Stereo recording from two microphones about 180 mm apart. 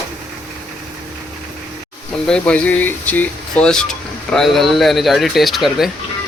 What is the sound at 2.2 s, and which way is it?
Speech, 5° left (ahead or behind).